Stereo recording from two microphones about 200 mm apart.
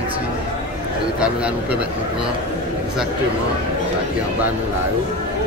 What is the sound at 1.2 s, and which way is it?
Speech, 5° right (ahead or behind).